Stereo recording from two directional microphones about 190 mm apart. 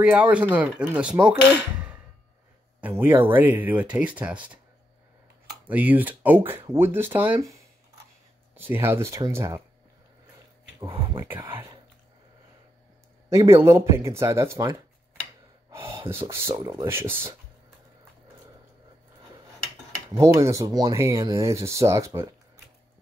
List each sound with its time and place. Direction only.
0.0 s speech: 5° right (ahead or behind)
2.8 s speech: 10° right (ahead or behind)
5.7 s speech: 10° right (ahead or behind)
11.1 s speech: 10° right (ahead or behind)
13.3 s speech: 15° right (ahead or behind)
20.1 s speech: 15° right (ahead or behind)